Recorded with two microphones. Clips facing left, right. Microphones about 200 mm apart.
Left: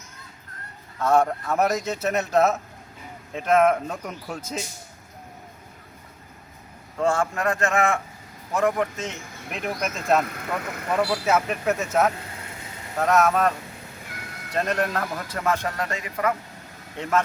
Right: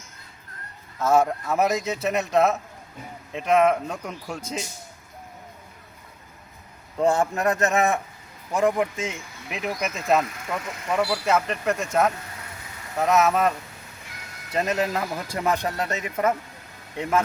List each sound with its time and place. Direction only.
0.9 s speech: 5° right (ahead or behind)
7.0 s a man's voice: 20° right (ahead or behind); by 10.0 s centre (ahead or behind)
10.2 s speech: 55° left (ahead or behind)
10.9 s speech: 5° left (ahead or behind)
14.5 s a man's voice: 5° right (ahead or behind); by 16.3 s 25° right (ahead or behind)